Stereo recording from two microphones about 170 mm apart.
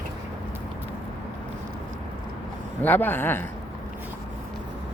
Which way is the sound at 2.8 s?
10° left (ahead or behind).